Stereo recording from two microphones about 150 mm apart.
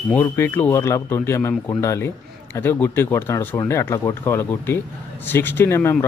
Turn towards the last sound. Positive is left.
turn(degrees=15)  # may be behind; listen again after turning